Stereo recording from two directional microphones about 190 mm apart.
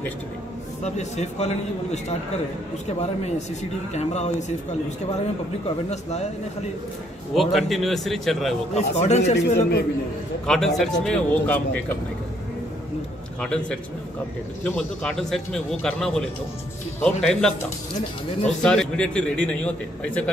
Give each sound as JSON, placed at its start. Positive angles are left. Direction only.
{"t": 0.8, "sound": "a man's voice", "side_deg": 35}
{"t": 3.9, "sound": "a man's voice", "side_deg": 35}
{"t": 5.9, "sound": "a man's voice", "side_deg": 35}
{"t": 7.3, "sound": "a man's voice", "side_deg": 0}
{"t": 8.7, "sound": "a man's voice", "side_deg": 35}
{"t": 9.2, "sound": "a man's voice", "side_deg": 65}
{"t": 10.4, "sound": "a man's voice", "side_deg": 0}
{"t": 13.4, "sound": "a man's voice", "side_deg": 5}